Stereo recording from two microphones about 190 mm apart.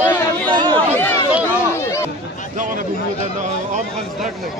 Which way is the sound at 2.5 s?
45° right (ahead or behind).